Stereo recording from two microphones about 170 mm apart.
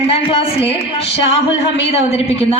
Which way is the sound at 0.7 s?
35° left (ahead or behind).